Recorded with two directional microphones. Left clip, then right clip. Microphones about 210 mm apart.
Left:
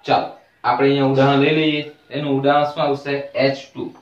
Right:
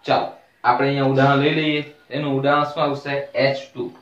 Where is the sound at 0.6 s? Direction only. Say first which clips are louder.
Left 2 dB; 20° right (ahead or behind).